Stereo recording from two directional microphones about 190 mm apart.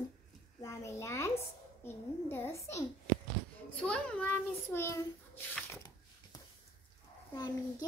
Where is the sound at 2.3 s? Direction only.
15° left (ahead or behind).